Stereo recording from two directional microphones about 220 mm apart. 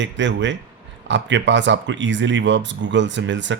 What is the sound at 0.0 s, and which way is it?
Speech, 55° right (ahead or behind).